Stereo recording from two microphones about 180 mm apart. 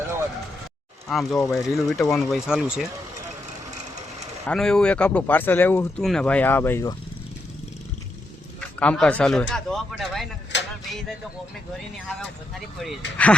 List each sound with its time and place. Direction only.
1.0 s speech: centre (ahead or behind)
4.4 s speech: 5° left (ahead or behind)
8.8 s speech: 5° left (ahead or behind)
10.5 s a sound: 80° left
12.0 s speech: centre (ahead or behind)